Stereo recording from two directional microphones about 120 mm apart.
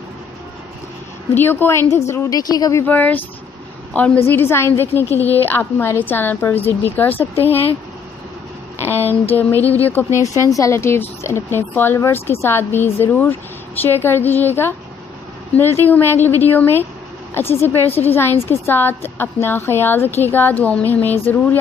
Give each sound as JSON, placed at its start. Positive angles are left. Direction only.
{"t": 1.3, "sound": "a woman's voice", "side_deg": 15}
{"t": 2.8, "sound": "a woman's voice", "side_deg": 15}
{"t": 8.7, "sound": "a woman's voice", "side_deg": 20}
{"t": 10.2, "sound": "a woman's voice", "side_deg": 25}